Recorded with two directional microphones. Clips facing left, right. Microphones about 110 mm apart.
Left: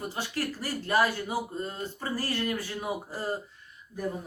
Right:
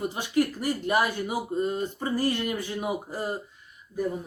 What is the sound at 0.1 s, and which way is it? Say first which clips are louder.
Speech: right 7 dB; 20° right (ahead or behind).